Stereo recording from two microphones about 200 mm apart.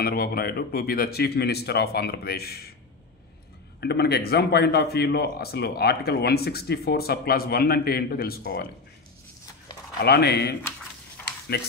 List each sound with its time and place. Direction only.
0.0 s speech: 50° left (ahead or behind)
3.8 s speech: 55° left (ahead or behind)
9.9 s speech: 55° left (ahead or behind)
11.2 s a sound: 10° left (ahead or behind)